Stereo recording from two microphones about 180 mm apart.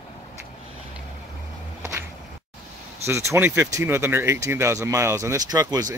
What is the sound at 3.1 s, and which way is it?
Speech, 15° right (ahead or behind).